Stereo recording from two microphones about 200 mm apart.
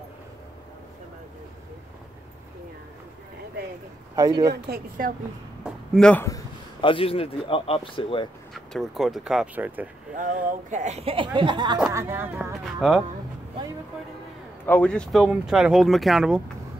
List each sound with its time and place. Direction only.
4.1 s speech: 20° right (ahead or behind)
4.6 s a woman's voice: 45° right (ahead or behind)
5.6 s a sound: 5° left (ahead or behind)
6.2 s a man's voice: 20° left (ahead or behind)
8.5 s speech: centre (ahead or behind)
10.1 s speech: 40° right (ahead or behind); by 12.3 s 15° right (ahead or behind)
12.8 s speech: centre (ahead or behind)
14.7 s speech: 5° left (ahead or behind)